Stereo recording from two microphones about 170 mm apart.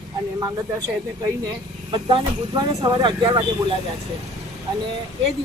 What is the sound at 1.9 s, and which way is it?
A woman's voice, 30° right (ahead or behind).